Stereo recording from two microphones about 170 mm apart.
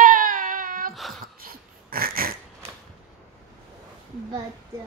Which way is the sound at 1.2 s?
60° right (ahead or behind).